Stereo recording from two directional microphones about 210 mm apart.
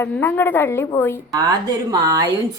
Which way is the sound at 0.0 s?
10° left (ahead or behind).